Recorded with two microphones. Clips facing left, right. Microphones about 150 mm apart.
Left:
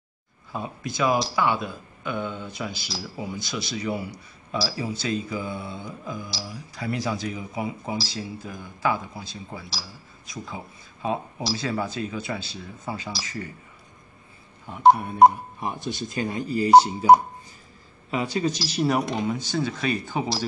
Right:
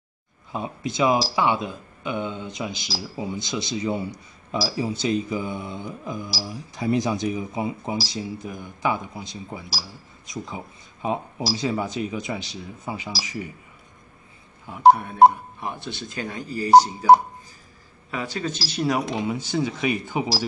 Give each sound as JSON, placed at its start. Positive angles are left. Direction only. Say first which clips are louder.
{"t": 0.5, "sound": "speech", "louder": "right 3 dB", "side_deg": -20}
{"t": 14.7, "sound": "telephone dialing", "louder": "right 2 dB", "side_deg": 0}
{"t": 15.6, "sound": "speech", "louder": "left 3 dB", "side_deg": 20}
{"t": 18.1, "sound": "speech", "louder": "left 4 dB", "side_deg": 20}
{"t": 18.7, "sound": "telephone dialing", "louder": "right 2 dB", "side_deg": 5}
{"t": 19.1, "sound": "speech", "louder": "right 1 dB", "side_deg": -10}